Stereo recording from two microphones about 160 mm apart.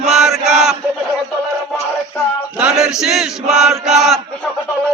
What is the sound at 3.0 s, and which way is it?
Chant, 5° right (ahead or behind).